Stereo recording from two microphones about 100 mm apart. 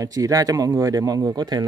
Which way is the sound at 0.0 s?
35° right (ahead or behind).